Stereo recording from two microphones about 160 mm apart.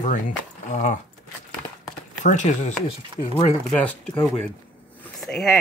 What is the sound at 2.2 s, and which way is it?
Speech, 50° left (ahead or behind).